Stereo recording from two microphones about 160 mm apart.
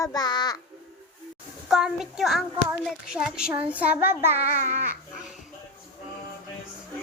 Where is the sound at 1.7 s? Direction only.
5° right (ahead or behind).